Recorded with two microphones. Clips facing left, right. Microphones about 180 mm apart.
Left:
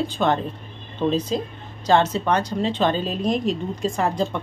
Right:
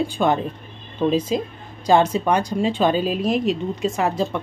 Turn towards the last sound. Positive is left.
turn(degrees=-5)  # may be behind; listen again after turning